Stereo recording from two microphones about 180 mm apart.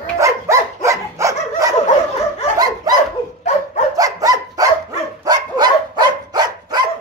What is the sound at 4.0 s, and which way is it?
Dog, 20° right (ahead or behind).